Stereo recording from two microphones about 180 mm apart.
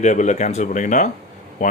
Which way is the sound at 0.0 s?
40° left (ahead or behind).